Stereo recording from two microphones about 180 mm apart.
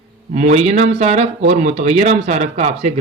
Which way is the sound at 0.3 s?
40° right (ahead or behind).